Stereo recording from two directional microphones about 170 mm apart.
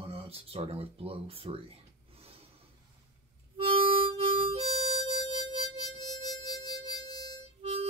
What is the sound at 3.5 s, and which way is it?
Harmonica, 30° right (ahead or behind).